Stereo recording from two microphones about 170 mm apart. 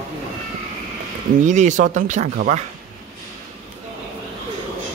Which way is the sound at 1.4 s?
45° right (ahead or behind).